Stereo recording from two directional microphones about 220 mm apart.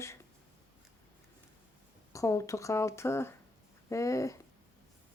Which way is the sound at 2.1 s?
15° left (ahead or behind).